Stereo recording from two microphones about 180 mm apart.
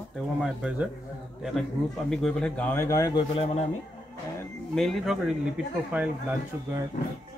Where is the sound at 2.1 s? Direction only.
5° left (ahead or behind); by 3.2 s 20° left (ahead or behind).